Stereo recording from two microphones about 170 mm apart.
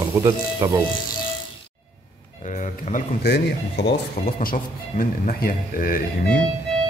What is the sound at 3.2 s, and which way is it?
Speech, 80° left.